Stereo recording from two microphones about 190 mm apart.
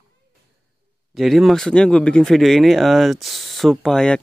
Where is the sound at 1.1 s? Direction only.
Centre (ahead or behind).